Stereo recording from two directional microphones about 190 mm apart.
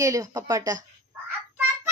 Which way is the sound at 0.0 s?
15° right (ahead or behind).